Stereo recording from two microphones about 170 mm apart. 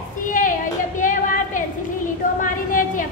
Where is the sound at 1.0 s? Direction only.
50° left (ahead or behind).